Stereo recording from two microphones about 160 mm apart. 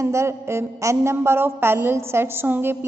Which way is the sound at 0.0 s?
15° right (ahead or behind).